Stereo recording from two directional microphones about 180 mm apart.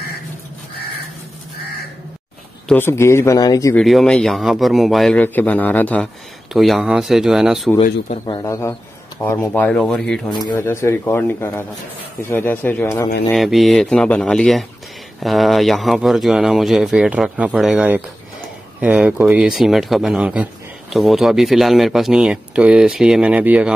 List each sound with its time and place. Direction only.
2.7 s speech: 15° left (ahead or behind)
3.7 s speech: centre (ahead or behind)
8.3 s speech: 20° left (ahead or behind); by 10.3 s 5° left (ahead or behind)
10.3 s speech: 20° left (ahead or behind)
13.3 s speech: centre (ahead or behind)